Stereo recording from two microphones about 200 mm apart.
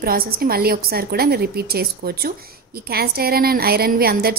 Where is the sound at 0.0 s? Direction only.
50° right (ahead or behind).